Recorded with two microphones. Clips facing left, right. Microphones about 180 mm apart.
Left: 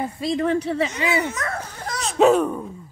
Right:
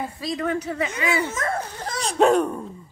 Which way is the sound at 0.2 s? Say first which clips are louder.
Left 5 dB; 25° left (ahead or behind).